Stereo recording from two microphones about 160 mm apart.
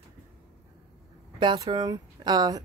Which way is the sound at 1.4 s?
25° right (ahead or behind).